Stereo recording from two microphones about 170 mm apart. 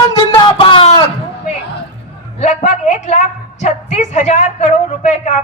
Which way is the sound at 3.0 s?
45° left (ahead or behind).